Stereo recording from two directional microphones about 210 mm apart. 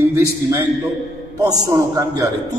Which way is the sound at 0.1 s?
15° right (ahead or behind).